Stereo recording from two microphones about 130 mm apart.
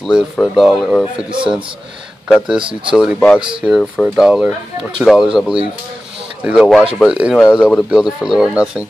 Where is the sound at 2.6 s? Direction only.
40° right (ahead or behind).